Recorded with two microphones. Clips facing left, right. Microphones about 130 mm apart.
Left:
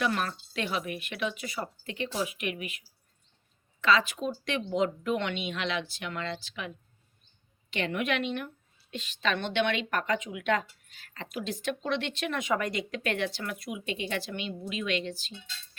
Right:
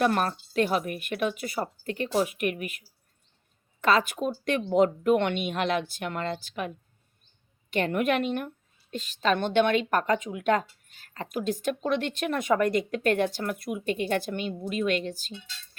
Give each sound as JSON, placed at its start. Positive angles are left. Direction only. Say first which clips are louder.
{"t": 0.0, "sound": "speech", "louder": "right 5 dB", "side_deg": -45}